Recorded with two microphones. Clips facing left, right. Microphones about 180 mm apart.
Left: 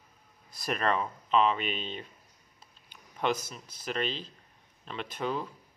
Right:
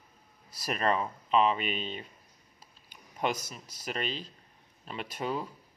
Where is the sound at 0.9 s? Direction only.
5° right (ahead or behind).